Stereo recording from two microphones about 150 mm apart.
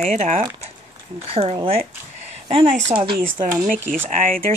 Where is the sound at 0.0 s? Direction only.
55° right (ahead or behind).